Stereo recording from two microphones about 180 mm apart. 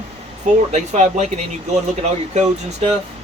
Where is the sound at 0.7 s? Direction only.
40° right (ahead or behind).